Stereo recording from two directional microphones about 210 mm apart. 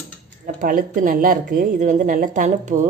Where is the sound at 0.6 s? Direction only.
40° right (ahead or behind).